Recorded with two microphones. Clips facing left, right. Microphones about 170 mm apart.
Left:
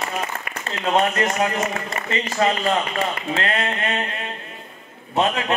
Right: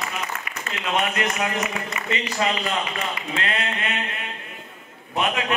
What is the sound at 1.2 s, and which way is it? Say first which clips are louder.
A man's voice: left 4 dB; 45° left (ahead or behind).